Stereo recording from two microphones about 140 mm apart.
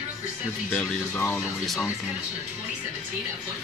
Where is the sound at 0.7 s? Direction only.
15° left (ahead or behind).